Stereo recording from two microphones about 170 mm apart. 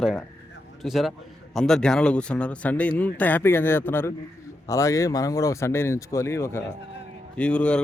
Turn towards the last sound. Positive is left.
turn(degrees=5)  # may be behind; listen again after turning